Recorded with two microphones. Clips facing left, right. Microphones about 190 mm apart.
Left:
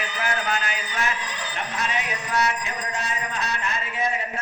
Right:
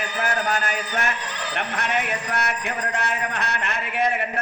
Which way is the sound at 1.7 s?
60° right (ahead or behind).